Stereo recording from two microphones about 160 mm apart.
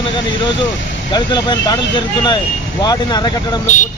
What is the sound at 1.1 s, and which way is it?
Speech, 25° left (ahead or behind).